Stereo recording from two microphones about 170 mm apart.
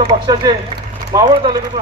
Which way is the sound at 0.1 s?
25° right (ahead or behind).